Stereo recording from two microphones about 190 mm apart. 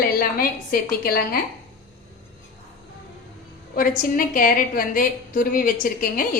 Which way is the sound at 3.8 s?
45° left (ahead or behind).